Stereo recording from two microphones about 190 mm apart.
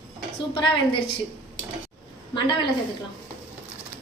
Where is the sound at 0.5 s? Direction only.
25° left (ahead or behind).